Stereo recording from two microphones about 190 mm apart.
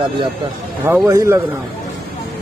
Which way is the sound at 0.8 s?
15° right (ahead or behind).